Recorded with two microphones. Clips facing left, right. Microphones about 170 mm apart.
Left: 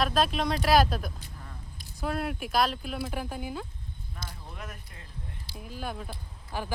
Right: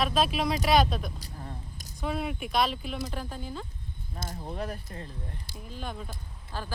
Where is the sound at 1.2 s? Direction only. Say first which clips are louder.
Right 5 dB; 35° right (ahead or behind).